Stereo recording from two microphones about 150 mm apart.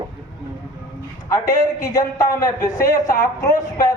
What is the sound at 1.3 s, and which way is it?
A man's voice, 25° left (ahead or behind).